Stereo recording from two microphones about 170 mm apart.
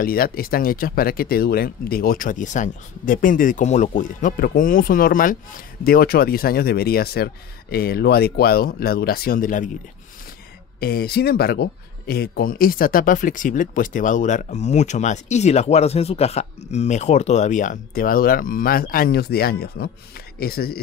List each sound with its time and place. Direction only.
0.0 s speech: 60° left (ahead or behind)
10.8 s speech: 65° left (ahead or behind)